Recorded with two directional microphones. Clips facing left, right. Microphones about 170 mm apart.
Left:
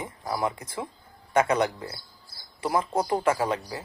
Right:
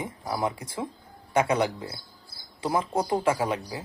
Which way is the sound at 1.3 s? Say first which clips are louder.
Left 1 dB; 10° right (ahead or behind).